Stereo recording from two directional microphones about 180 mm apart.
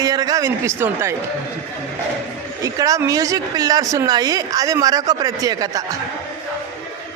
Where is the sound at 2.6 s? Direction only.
20° right (ahead or behind).